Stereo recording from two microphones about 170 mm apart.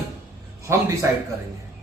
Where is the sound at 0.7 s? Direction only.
15° right (ahead or behind).